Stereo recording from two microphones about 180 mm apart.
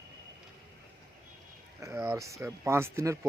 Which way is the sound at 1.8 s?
15° right (ahead or behind).